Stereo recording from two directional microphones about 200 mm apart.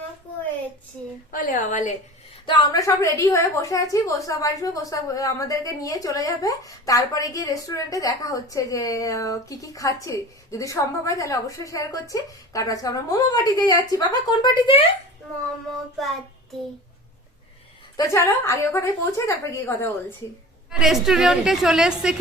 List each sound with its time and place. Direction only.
1.3 s a woman's voice: 40° left (ahead or behind)
2.5 s a woman's voice: 20° left (ahead or behind)
17.9 s a woman's voice: 15° left (ahead or behind)
20.7 s a woman's voice: 5° right (ahead or behind)